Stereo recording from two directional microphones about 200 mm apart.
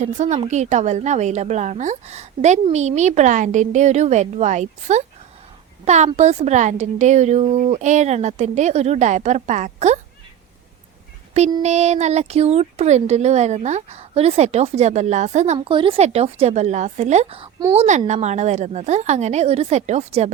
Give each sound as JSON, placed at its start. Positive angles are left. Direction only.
{"t": 0.0, "sound": "a woman's voice", "side_deg": -35}
{"t": 11.6, "sound": "a woman's voice", "side_deg": -35}
{"t": 15.5, "sound": "a woman's voice", "side_deg": -25}
{"t": 17.8, "sound": "a woman's voice", "side_deg": -35}